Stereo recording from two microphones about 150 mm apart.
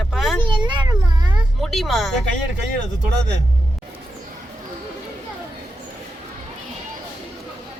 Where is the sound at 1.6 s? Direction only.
Centre (ahead or behind).